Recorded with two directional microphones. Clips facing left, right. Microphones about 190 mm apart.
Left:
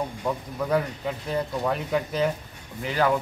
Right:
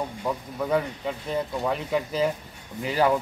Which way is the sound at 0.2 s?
Centre (ahead or behind).